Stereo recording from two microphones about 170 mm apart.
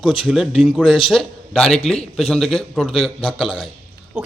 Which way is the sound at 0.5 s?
35° left (ahead or behind).